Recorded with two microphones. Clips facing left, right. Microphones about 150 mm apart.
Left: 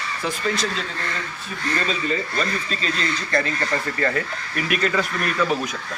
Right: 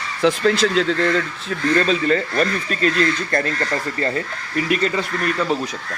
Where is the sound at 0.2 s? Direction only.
90° right; by 2.9 s 60° right (ahead or behind).